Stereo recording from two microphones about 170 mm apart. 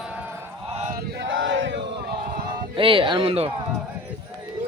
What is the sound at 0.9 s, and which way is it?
Crowd, 80° right.